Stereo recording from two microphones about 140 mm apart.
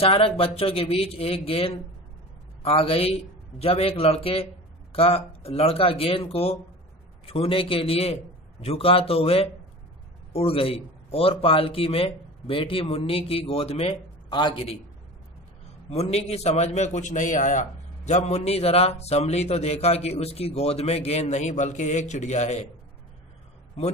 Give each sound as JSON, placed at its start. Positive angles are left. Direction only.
{"t": 0.0, "sound": "a man's voice", "side_deg": 45}
{"t": 15.9, "sound": "a man's voice", "side_deg": 45}